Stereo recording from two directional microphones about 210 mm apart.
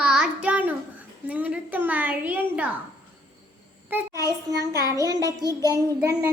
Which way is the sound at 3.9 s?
10° right (ahead or behind).